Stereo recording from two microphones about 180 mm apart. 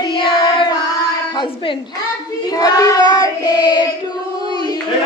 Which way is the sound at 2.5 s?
20° left (ahead or behind).